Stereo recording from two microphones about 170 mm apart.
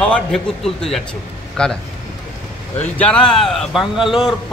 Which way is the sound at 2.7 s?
10° left (ahead or behind).